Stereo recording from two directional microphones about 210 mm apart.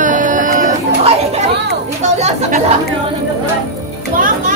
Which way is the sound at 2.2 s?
30° right (ahead or behind).